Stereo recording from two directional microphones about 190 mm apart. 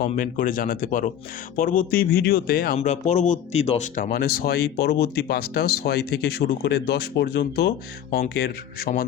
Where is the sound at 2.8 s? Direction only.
35° left (ahead or behind).